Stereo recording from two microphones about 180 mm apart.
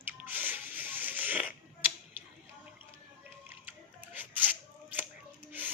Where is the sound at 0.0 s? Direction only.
10° right (ahead or behind).